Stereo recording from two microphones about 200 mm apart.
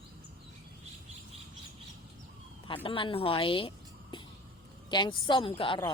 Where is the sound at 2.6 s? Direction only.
25° left (ahead or behind).